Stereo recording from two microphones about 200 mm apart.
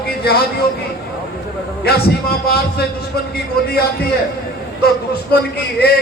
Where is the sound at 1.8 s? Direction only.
50° left (ahead or behind).